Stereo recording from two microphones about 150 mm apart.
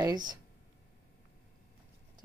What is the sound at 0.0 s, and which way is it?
Speech, 30° right (ahead or behind).